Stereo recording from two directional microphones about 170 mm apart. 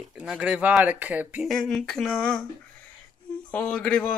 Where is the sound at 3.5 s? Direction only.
10° left (ahead or behind).